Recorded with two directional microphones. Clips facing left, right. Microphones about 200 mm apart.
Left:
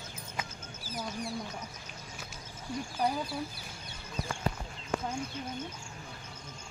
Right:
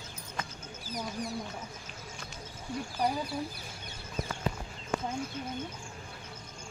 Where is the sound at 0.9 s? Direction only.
5° left (ahead or behind).